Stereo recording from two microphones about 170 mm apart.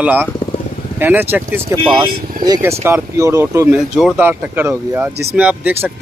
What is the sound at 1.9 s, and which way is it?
Speech, 25° right (ahead or behind).